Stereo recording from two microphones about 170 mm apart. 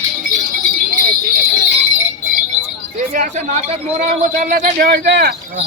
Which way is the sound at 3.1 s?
50° right (ahead or behind).